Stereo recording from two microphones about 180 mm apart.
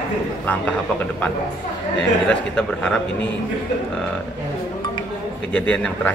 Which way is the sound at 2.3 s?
5° left (ahead or behind).